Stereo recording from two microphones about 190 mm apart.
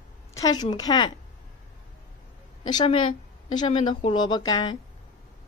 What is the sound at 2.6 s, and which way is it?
A woman's voice, 25° left (ahead or behind).